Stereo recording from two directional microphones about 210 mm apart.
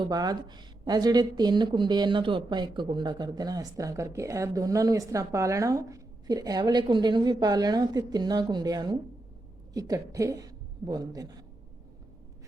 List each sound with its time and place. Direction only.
0.0 s a woman's voice: 20° right (ahead or behind)